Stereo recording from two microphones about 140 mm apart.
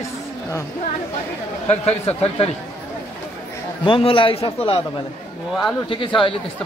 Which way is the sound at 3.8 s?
40° left (ahead or behind).